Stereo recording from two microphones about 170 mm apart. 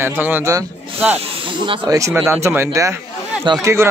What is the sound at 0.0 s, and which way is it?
A man's voice, 10° right (ahead or behind).